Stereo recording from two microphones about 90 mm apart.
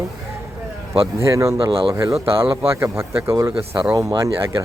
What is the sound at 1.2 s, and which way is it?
Speech, 35° right (ahead or behind).